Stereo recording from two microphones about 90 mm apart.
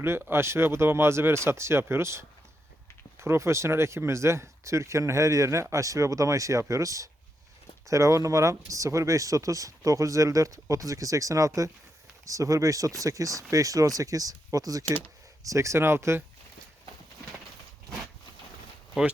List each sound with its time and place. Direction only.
0.0 s speech: 25° right (ahead or behind)
19.0 s speech: 5° right (ahead or behind)